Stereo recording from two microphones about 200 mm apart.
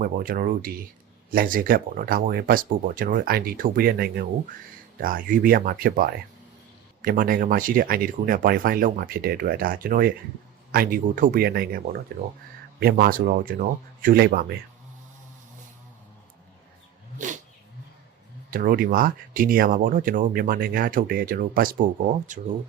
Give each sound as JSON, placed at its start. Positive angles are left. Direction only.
{"t": 0.0, "sound": "speech", "side_deg": -45}
{"t": 18.5, "sound": "speech", "side_deg": -45}